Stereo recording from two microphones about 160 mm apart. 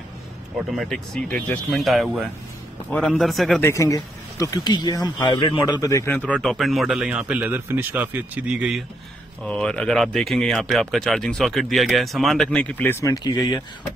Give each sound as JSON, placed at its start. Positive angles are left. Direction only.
{"t": 0.7, "sound": "speech", "side_deg": 0}
{"t": 3.6, "sound": "speech", "side_deg": 20}
{"t": 5.7, "sound": "speech", "side_deg": 20}
{"t": 13.1, "sound": "speech", "side_deg": 25}